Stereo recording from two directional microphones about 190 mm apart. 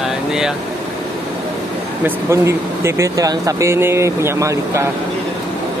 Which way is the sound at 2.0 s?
15° right (ahead or behind).